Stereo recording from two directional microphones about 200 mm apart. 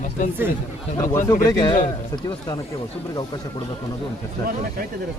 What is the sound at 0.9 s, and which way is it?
Speech, 15° left (ahead or behind).